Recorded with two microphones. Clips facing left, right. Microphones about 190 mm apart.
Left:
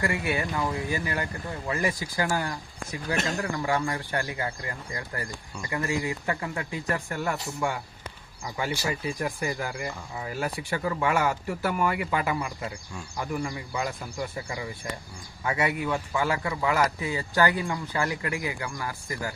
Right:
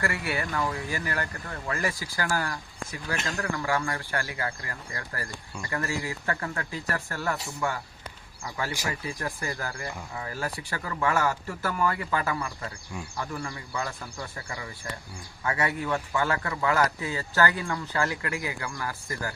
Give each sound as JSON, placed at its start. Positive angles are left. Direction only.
{"t": 0.0, "sound": "a man's voice", "side_deg": 20}
{"t": 8.4, "sound": "a man's voice", "side_deg": 15}